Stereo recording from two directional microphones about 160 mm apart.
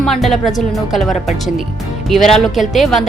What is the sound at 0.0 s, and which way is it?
A woman's voice, centre (ahead or behind).